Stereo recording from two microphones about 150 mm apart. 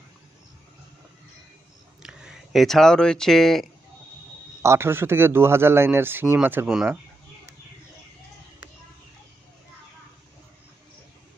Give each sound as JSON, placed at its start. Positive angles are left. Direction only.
{"t": 2.0, "sound": "speech", "side_deg": -5}
{"t": 4.6, "sound": "speech", "side_deg": -15}